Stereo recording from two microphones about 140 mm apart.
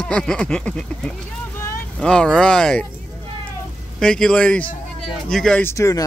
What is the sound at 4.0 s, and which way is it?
Speech, 5° left (ahead or behind).